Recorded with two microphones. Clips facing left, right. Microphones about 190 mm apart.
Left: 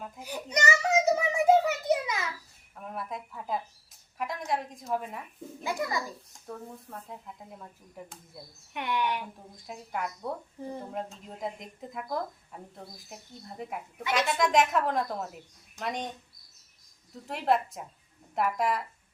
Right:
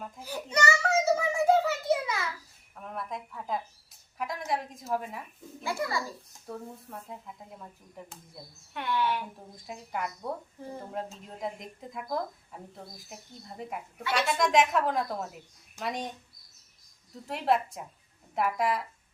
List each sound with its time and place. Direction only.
0.5 s a sound: 20° left (ahead or behind)
2.9 s a woman's voice: 5° left (ahead or behind)
5.6 s a child's voice: 20° left (ahead or behind)
6.5 s speech: 5° right (ahead or behind)
8.7 s speech: 15° left (ahead or behind)
9.6 s speech: centre (ahead or behind)
13.6 s speech: centre (ahead or behind)
17.2 s speech: centre (ahead or behind)